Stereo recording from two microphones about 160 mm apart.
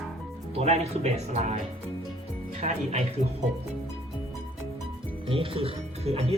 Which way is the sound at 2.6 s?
45° right (ahead or behind).